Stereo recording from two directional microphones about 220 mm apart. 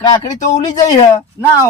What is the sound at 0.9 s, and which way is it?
Speech, 15° left (ahead or behind).